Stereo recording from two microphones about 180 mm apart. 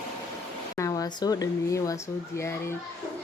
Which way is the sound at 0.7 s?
20° left (ahead or behind).